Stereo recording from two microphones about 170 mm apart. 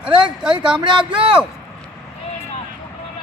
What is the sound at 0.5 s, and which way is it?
Speech, 30° right (ahead or behind).